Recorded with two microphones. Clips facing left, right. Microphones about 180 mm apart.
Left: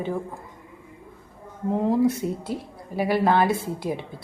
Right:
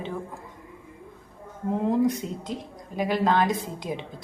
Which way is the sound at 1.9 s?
10° left (ahead or behind).